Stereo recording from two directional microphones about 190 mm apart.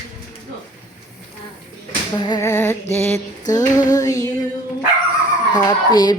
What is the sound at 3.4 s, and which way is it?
Female singing, 20° left (ahead or behind).